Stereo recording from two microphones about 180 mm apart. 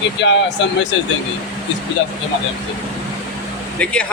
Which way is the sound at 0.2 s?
90° left.